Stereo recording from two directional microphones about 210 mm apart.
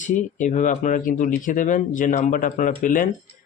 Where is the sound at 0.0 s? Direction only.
35° left (ahead or behind).